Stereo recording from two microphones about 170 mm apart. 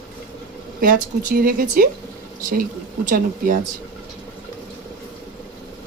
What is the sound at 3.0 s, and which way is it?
Speech, 55° right (ahead or behind).